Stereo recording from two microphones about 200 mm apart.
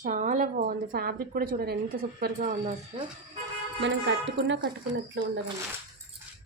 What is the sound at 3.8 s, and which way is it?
Speech, 65° right (ahead or behind).